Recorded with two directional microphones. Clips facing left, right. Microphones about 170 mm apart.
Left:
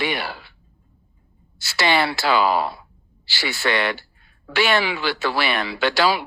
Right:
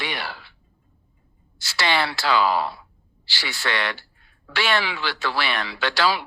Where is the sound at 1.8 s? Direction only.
10° left (ahead or behind).